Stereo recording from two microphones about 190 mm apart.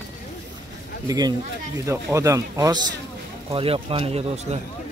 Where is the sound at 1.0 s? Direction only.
20° right (ahead or behind).